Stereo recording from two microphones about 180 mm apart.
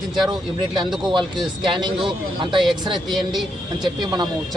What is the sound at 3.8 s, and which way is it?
Speech, 25° right (ahead or behind).